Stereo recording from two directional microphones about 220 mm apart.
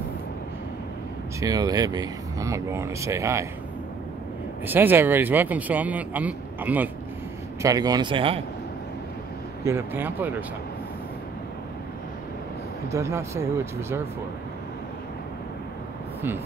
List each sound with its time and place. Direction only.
1.4 s a man's voice: 15° right (ahead or behind)
4.6 s a man's voice: 10° right (ahead or behind)
9.7 s a man's voice: 10° right (ahead or behind)
12.9 s a man's voice: 10° right (ahead or behind)